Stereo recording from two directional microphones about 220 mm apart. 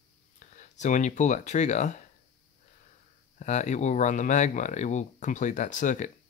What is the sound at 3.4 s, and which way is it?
Speech, 30° left (ahead or behind).